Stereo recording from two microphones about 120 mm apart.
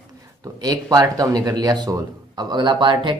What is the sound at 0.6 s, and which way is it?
Speech, 30° right (ahead or behind).